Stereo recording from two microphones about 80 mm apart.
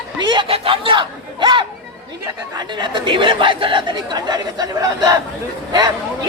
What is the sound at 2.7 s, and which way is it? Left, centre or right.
Speech, right.